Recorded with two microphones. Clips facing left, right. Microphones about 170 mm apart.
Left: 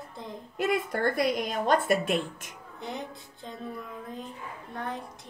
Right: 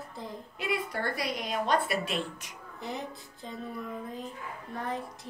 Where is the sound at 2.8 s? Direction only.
Centre (ahead or behind).